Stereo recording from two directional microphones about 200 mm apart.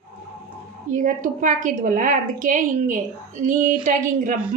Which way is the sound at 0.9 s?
40° right (ahead or behind).